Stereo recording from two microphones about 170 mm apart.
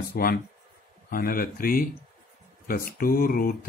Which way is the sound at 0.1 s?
60° left (ahead or behind).